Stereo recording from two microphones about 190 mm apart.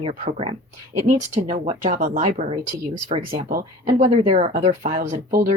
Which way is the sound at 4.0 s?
35° right (ahead or behind).